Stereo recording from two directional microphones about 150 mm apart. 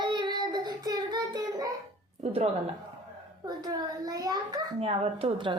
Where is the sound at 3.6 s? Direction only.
25° right (ahead or behind).